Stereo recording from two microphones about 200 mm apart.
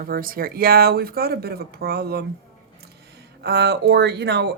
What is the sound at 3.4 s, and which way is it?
Speech, 55° right (ahead or behind).